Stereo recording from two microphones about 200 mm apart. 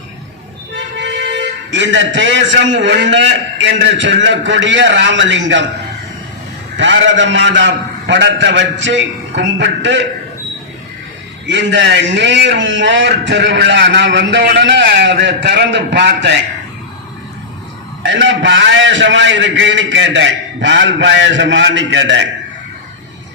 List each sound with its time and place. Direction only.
0.7 s a man's voice: 65° right (ahead or behind)
6.7 s a man's voice: 65° right (ahead or behind)
11.4 s a man's voice: 65° right (ahead or behind)
18.0 s a man's voice: 65° right (ahead or behind)